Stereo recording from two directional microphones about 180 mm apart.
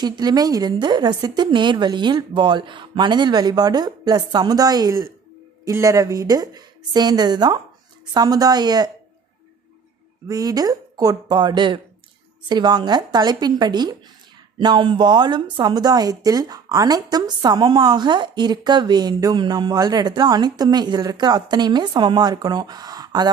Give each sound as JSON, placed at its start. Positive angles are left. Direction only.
{"t": 0.0, "sound": "a woman's voice", "side_deg": -20}
{"t": 10.2, "sound": "a woman's voice", "side_deg": -20}